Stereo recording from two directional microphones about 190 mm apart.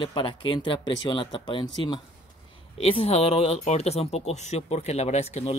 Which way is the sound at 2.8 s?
30° left (ahead or behind).